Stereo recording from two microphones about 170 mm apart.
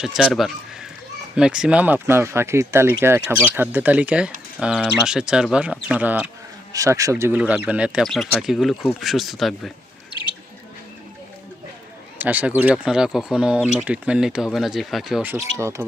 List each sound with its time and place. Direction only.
0.0 s speech: 5° right (ahead or behind)
6.7 s speech: 20° right (ahead or behind); by 9.7 s centre (ahead or behind)
12.2 s speech: 10° right (ahead or behind)
15.5 s speech: 15° right (ahead or behind)